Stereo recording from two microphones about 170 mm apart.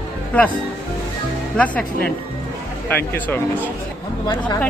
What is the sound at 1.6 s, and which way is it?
Speech, 5° left (ahead or behind).